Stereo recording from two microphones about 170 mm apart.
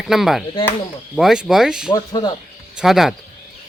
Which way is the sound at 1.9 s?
25° left (ahead or behind).